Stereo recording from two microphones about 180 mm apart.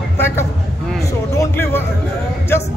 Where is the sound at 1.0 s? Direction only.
15° left (ahead or behind).